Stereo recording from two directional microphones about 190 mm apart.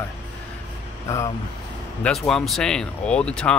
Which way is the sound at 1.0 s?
15° left (ahead or behind).